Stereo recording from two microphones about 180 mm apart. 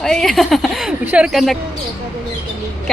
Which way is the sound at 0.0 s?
5° left (ahead or behind).